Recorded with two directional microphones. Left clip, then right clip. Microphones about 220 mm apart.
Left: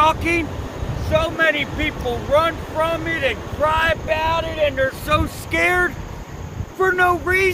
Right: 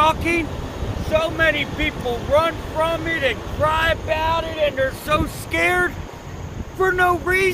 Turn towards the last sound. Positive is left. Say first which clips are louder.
# left 1 dB
turn(degrees=0)  # may be behind; listen again after turning